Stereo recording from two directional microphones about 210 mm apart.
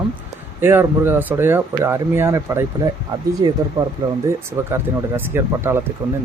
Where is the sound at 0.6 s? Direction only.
10° right (ahead or behind).